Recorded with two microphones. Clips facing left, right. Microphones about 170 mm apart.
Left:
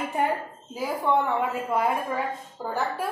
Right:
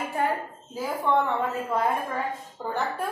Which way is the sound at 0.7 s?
10° left (ahead or behind).